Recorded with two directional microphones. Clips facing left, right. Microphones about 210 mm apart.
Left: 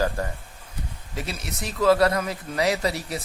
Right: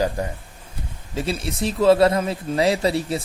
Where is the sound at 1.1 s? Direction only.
30° right (ahead or behind).